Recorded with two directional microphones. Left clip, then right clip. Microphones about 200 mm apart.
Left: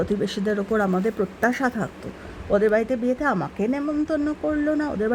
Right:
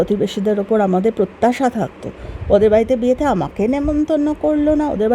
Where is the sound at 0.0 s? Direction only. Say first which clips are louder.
Right 7 dB; 15° right (ahead or behind).